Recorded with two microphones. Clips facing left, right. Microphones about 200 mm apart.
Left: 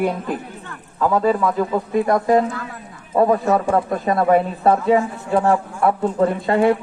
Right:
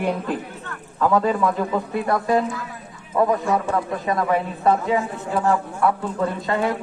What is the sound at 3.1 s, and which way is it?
Speech, 35° left (ahead or behind).